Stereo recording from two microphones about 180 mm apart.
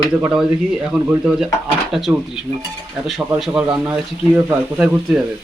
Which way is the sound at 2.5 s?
15° right (ahead or behind).